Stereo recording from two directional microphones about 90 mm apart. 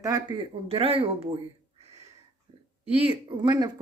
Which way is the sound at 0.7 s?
90° right.